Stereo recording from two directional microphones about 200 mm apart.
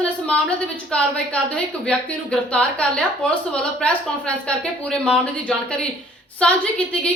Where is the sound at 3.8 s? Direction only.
5° left (ahead or behind).